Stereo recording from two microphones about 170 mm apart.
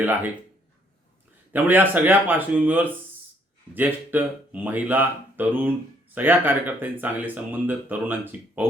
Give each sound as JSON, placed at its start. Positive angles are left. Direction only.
{"t": 0.0, "sound": "speech", "side_deg": -10}
{"t": 1.5, "sound": "speech", "side_deg": -10}